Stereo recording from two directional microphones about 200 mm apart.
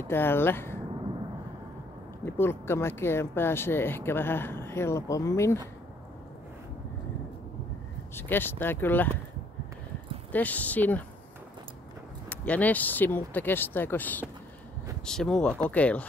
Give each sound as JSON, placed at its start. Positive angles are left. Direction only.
{"t": 0.1, "sound": "speech", "side_deg": 10}
{"t": 2.2, "sound": "speech", "side_deg": 10}
{"t": 8.1, "sound": "speech", "side_deg": 10}
{"t": 10.3, "sound": "speech", "side_deg": 10}
{"t": 12.3, "sound": "speech", "side_deg": 5}